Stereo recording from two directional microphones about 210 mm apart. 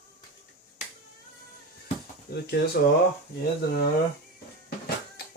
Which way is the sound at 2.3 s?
50° left (ahead or behind).